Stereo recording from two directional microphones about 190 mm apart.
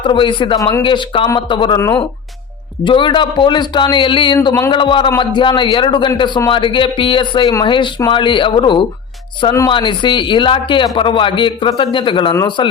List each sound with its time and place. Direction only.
0.0 s a man's voice: 25° left (ahead or behind)
4.4 s speech: 15° left (ahead or behind)
4.7 s a man's voice: 25° left (ahead or behind)